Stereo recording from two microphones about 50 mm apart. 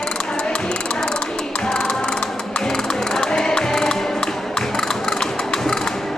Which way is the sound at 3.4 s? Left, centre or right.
Centre.